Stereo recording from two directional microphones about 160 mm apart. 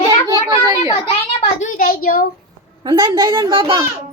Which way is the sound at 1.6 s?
55° left (ahead or behind).